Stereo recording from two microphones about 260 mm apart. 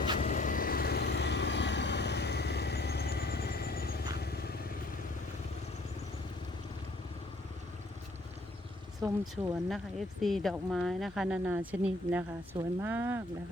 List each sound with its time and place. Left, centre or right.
0.2 s vehicle: left
9.2 s speech: centre